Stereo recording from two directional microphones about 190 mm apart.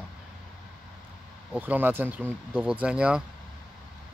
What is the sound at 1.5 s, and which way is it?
Speech, 10° right (ahead or behind).